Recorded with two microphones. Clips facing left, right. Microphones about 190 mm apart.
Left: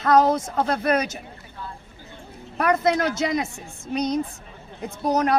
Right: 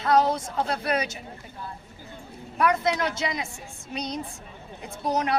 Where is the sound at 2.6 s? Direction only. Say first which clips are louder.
Left 3 dB; 45° left (ahead or behind).